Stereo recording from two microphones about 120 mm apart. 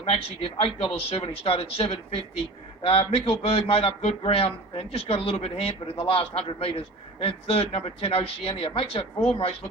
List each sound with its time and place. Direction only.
0.0 s a man's voice: 50° left (ahead or behind)